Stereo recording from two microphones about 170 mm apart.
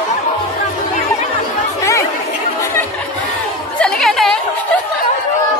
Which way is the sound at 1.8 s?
20° left (ahead or behind).